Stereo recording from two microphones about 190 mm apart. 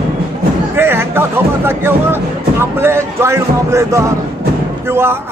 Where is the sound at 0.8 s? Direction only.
10° right (ahead or behind).